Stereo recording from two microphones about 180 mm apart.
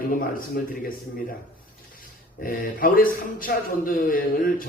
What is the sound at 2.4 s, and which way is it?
Speech, 50° left (ahead or behind).